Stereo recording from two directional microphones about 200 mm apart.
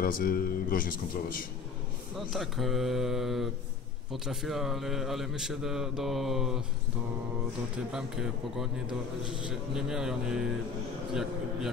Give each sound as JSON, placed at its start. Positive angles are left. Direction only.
{"t": 0.0, "sound": "speech", "side_deg": 45}
{"t": 2.1, "sound": "a man's voice", "side_deg": 0}
{"t": 7.9, "sound": "a man's voice", "side_deg": 0}